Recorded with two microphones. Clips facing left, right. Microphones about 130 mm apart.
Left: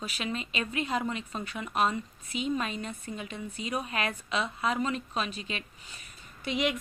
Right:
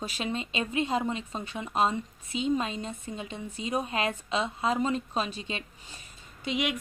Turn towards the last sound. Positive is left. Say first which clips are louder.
# right 1 dB
turn(degrees=-30)  # may be behind; listen again after turning